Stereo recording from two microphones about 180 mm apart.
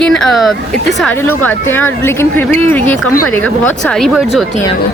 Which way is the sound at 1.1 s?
10° left (ahead or behind).